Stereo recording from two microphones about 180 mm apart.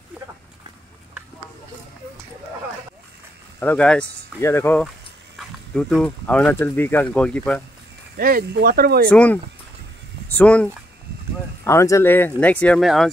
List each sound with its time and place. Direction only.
3.5 s speech: 10° left (ahead or behind)
8.2 s speech: 55° right (ahead or behind)
9.1 s speech: 10° left (ahead or behind)